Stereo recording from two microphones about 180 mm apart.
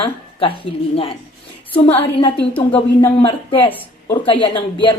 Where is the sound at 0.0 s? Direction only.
30° left (ahead or behind).